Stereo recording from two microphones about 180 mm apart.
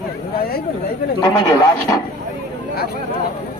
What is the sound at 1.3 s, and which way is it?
Speech, 20° left (ahead or behind).